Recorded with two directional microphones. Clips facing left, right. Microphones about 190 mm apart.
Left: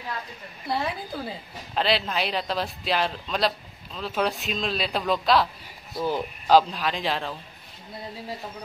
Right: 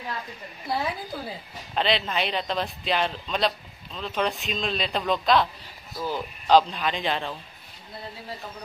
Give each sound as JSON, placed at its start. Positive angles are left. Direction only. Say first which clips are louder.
{"t": 0.7, "sound": "speech", "louder": "even", "side_deg": 0}
{"t": 5.9, "sound": "speech", "louder": "left 3 dB", "side_deg": 20}
{"t": 6.4, "sound": "speech", "louder": "even", "side_deg": 5}